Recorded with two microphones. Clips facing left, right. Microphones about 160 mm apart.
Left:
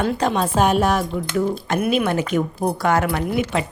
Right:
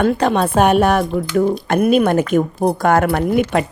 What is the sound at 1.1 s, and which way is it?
Speech, 50° right (ahead or behind).